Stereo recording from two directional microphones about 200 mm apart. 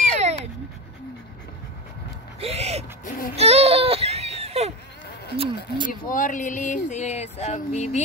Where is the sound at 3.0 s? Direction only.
45° left (ahead or behind).